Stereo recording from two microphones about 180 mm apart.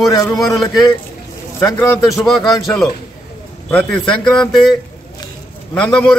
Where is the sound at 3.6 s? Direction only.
10° left (ahead or behind).